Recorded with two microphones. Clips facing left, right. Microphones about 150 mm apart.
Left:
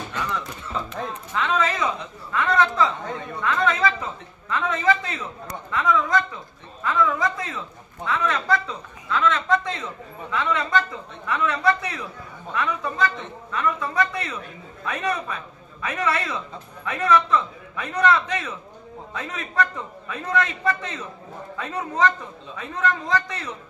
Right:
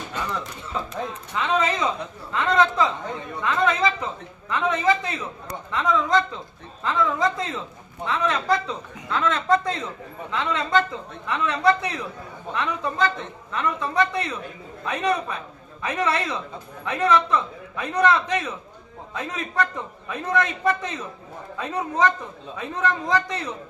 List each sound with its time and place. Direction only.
1.4 s a man's voice: 20° right (ahead or behind)
9.0 s a woman's voice: 35° right (ahead or behind); by 23.4 s 15° right (ahead or behind)